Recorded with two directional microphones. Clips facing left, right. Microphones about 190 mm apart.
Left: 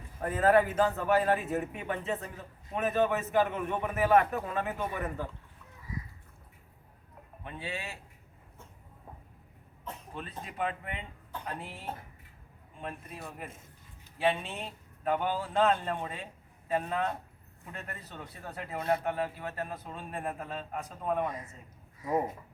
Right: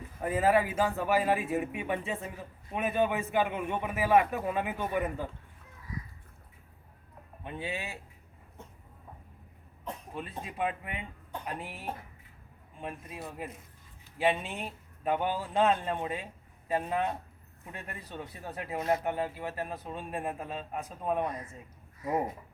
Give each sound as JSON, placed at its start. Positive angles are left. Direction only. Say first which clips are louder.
{"t": 0.2, "sound": "a man's voice", "louder": "left 1 dB", "side_deg": -10}
{"t": 7.4, "sound": "a man's voice", "louder": "right 2 dB", "side_deg": -20}
{"t": 10.2, "sound": "a man's voice", "louder": "right 1 dB", "side_deg": -10}